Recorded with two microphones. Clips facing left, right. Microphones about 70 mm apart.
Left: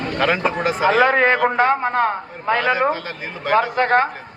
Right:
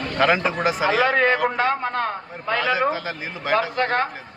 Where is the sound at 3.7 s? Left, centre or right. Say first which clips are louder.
Left 5 dB; left.